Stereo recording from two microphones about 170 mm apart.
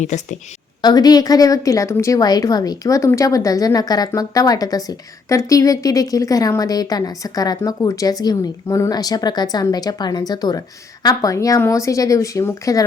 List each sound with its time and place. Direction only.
0.0 s a woman's voice: 45° left (ahead or behind)
0.8 s a woman's voice: 25° left (ahead or behind)